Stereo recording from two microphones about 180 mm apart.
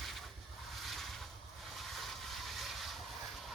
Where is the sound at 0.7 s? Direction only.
Centre (ahead or behind).